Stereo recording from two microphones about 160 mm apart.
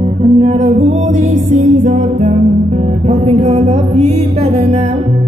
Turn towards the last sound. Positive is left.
turn(degrees=-40)  # may be behind; listen again after turning